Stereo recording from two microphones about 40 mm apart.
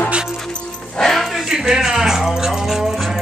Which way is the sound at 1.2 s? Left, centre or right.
Centre.